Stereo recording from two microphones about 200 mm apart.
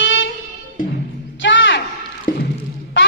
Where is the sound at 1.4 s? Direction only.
70° left (ahead or behind).